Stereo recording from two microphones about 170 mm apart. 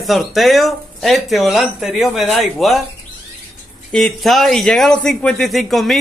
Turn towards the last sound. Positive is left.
turn(degrees=0)  # may be behind; listen again after turning